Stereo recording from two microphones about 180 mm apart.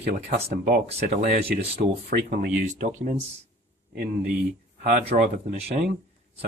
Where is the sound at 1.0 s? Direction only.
40° right (ahead or behind).